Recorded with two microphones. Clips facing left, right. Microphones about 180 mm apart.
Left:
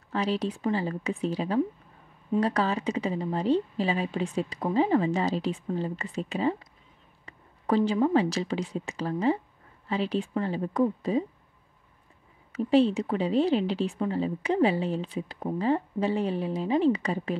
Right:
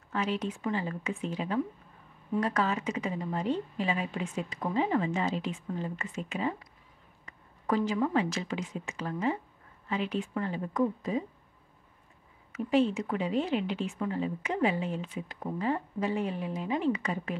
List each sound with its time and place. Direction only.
0.1 s a woman's voice: 35° left (ahead or behind)
12.5 s a woman's voice: 30° left (ahead or behind)